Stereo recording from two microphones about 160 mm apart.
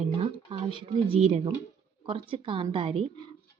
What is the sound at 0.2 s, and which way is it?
Speech, 35° right (ahead or behind).